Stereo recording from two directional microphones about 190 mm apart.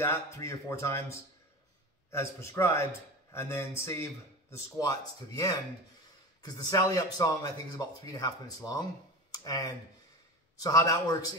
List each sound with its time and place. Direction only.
0.0 s a man's voice: 15° left (ahead or behind)
9.3 s a sound: 20° left (ahead or behind)
10.6 s a man's voice: 20° left (ahead or behind)